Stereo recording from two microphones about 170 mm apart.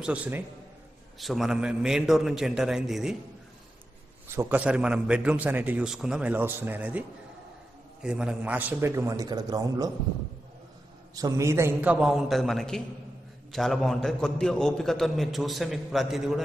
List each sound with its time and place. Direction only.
0.0 s a man's voice: 5° right (ahead or behind)
4.4 s a man's voice: 10° right (ahead or behind)
11.1 s a man's voice: 20° right (ahead or behind); by 16.3 s centre (ahead or behind)